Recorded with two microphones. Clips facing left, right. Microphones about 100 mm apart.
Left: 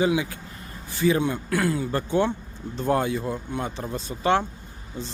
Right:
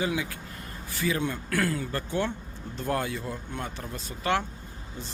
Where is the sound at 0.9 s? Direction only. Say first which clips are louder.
Left 7 dB; 25° left (ahead or behind).